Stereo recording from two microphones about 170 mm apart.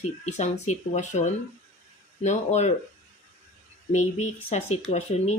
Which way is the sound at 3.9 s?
45° left (ahead or behind).